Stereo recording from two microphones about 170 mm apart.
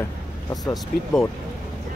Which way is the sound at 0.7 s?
5° left (ahead or behind).